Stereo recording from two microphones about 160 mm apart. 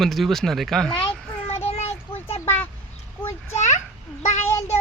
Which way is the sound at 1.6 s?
40° left (ahead or behind).